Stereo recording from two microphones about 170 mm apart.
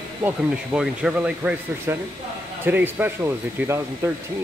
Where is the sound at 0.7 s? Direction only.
5° right (ahead or behind).